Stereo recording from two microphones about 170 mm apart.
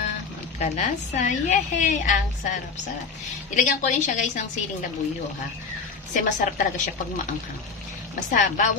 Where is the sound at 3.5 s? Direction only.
50° left (ahead or behind).